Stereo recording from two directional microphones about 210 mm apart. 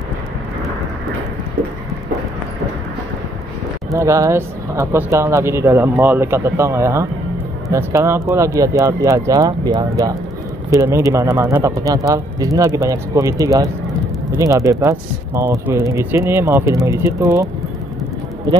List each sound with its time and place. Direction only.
3.9 s speech: 15° right (ahead or behind)